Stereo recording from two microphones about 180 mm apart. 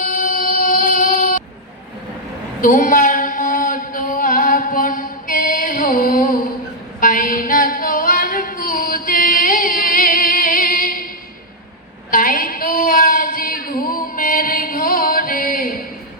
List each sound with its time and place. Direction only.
0.0 s music: 45° left (ahead or behind)
2.6 s a sound: 50° left (ahead or behind)
7.0 s singing: 50° left (ahead or behind)
12.1 s female singing: 50° left (ahead or behind)